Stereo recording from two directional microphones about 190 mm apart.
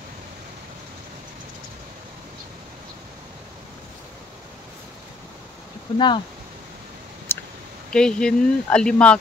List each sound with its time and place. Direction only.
5.9 s speech: 25° left (ahead or behind)
7.3 s a sound: 10° left (ahead or behind)
7.9 s speech: 5° left (ahead or behind)